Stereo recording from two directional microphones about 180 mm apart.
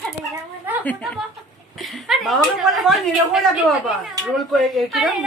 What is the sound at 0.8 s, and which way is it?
Speech, 5° left (ahead or behind).